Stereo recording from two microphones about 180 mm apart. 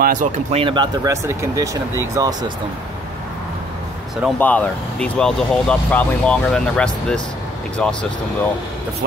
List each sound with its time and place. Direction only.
0.0 s speech: 45° right (ahead or behind)
0.6 s speech: 25° right (ahead or behind)
4.4 s speech: 10° left (ahead or behind)